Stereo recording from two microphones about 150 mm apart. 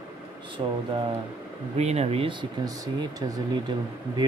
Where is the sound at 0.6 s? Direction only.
35° right (ahead or behind).